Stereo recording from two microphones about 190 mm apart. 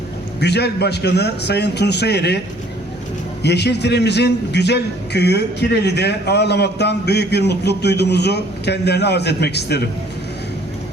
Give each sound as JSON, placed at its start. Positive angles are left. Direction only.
{"t": 0.3, "sound": "a man's voice", "side_deg": 60}
{"t": 3.4, "sound": "a man's voice", "side_deg": 60}